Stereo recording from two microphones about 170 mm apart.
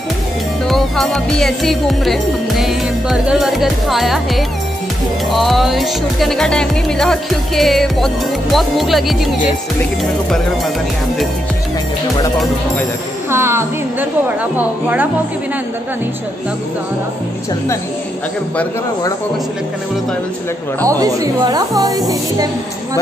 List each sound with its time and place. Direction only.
0.7 s music: centre (ahead or behind)
13.3 s speech: 15° right (ahead or behind)
20.8 s speech: 20° right (ahead or behind)